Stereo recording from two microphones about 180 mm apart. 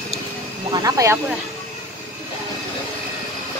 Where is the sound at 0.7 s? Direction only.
20° right (ahead or behind).